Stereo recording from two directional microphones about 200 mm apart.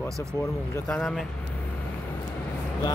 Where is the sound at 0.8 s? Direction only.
5° left (ahead or behind).